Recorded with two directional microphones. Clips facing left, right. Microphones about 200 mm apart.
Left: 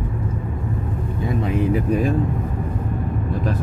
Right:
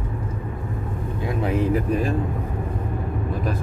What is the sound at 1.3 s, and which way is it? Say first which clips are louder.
Speech: left 1 dB; centre (ahead or behind).